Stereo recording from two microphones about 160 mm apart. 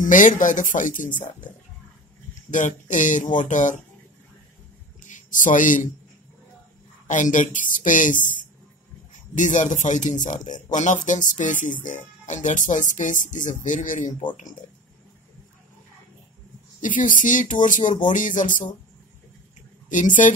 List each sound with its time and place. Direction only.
0.0 s speech: 55° left (ahead or behind)
2.5 s speech: 50° left (ahead or behind)
5.0 s a sound: 50° left (ahead or behind)
7.1 s speech: 50° left (ahead or behind)
16.8 s speech: 55° left (ahead or behind)
19.9 s speech: 55° left (ahead or behind)